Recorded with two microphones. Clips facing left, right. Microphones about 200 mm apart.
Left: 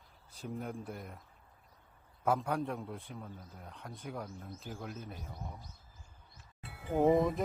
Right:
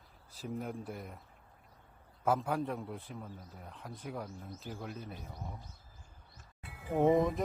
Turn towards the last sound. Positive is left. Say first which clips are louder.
# even
turn(degrees=0)  # may be behind; listen again after turning